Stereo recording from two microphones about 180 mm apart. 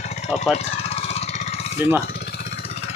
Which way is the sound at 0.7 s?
35° left (ahead or behind).